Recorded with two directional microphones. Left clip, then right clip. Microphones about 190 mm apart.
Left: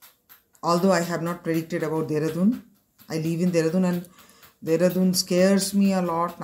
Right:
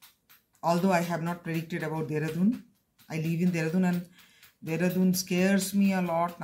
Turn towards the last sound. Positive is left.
turn(degrees=-15)  # may be behind; listen again after turning